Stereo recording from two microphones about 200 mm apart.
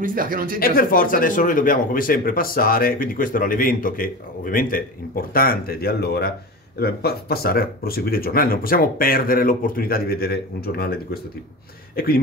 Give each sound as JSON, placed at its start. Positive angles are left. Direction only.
{"t": 0.0, "sound": "speech", "side_deg": -45}
{"t": 0.6, "sound": "speech", "side_deg": 45}